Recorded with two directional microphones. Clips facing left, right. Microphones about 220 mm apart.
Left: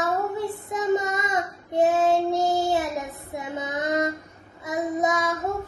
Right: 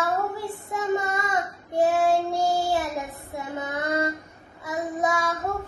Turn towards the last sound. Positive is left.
turn(degrees=20)  # may be behind; listen again after turning